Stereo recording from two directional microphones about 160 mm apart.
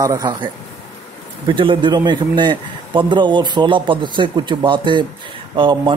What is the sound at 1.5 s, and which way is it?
A man's voice, 30° right (ahead or behind).